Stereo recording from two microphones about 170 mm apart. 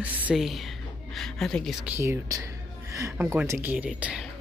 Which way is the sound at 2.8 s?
15° right (ahead or behind).